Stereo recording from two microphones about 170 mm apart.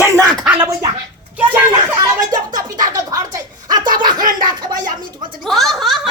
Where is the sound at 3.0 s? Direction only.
20° right (ahead or behind).